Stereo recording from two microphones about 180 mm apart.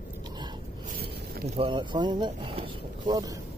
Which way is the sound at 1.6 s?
25° right (ahead or behind).